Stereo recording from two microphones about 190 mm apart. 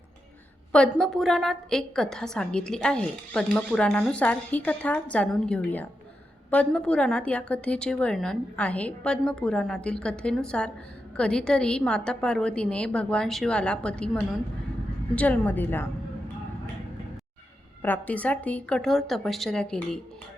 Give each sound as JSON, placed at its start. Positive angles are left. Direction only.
{"t": 0.7, "sound": "a woman's voice", "side_deg": 5}
{"t": 17.8, "sound": "a woman's voice", "side_deg": 10}